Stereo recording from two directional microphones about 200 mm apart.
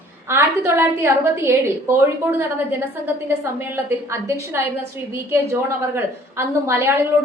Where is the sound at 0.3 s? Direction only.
10° right (ahead or behind).